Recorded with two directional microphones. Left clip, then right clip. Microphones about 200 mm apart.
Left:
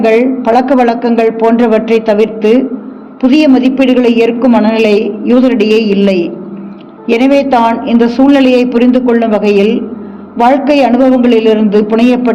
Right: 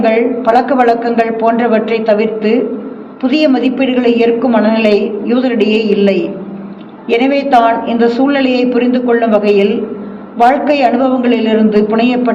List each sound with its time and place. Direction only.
0.0 s a man's voice: 55° left (ahead or behind)